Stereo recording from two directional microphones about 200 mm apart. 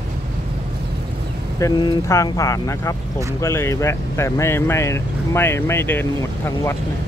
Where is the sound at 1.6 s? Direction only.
15° left (ahead or behind).